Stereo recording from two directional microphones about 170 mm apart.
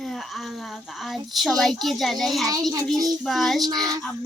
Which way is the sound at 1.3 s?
Centre (ahead or behind).